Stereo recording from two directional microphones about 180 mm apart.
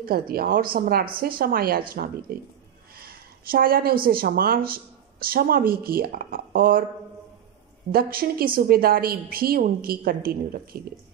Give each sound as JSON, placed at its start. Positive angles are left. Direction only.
{"t": 0.3, "sound": "a woman's voice", "side_deg": -55}
{"t": 3.0, "sound": "a sound", "side_deg": -55}
{"t": 4.0, "sound": "a woman's voice", "side_deg": -55}
{"t": 7.9, "sound": "a woman's voice", "side_deg": -55}